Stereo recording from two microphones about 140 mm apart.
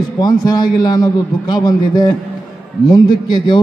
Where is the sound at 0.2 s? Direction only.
30° left (ahead or behind).